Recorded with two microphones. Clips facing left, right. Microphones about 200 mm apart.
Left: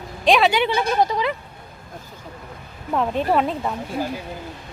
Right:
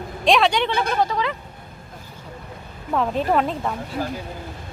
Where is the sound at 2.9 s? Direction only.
Centre (ahead or behind).